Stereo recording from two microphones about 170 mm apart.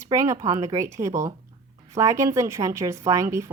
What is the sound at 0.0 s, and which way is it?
Speech, 20° right (ahead or behind).